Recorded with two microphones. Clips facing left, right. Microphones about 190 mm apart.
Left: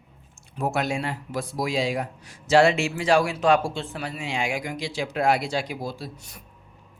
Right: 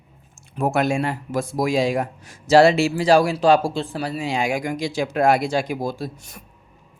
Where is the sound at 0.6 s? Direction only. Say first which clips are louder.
Right 6 dB; 50° right (ahead or behind).